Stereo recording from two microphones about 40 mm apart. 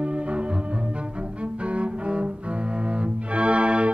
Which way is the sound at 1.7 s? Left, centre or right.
Right.